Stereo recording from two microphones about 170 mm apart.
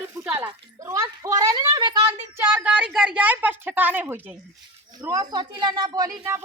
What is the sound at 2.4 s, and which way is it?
A woman's voice, 10° right (ahead or behind).